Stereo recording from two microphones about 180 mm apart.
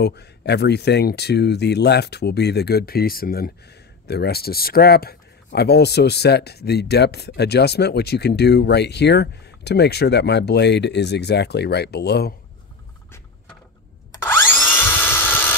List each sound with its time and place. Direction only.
0.0 s speech: 65° left (ahead or behind)
14.1 s drill: 10° left (ahead or behind)